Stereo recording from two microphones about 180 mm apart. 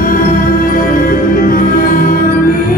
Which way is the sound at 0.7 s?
50° left (ahead or behind).